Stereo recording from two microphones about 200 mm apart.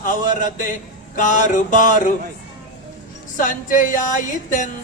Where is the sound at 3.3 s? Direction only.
40° left (ahead or behind).